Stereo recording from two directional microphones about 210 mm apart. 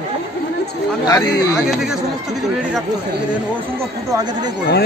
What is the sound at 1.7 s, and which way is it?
Speech, 5° right (ahead or behind).